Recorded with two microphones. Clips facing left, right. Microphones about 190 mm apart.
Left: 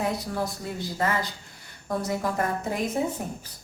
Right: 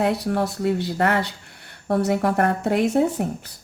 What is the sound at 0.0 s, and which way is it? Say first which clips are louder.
Speech: right 7 dB; 65° right (ahead or behind).